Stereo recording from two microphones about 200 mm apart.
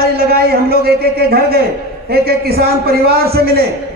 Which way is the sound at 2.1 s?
50° right (ahead or behind).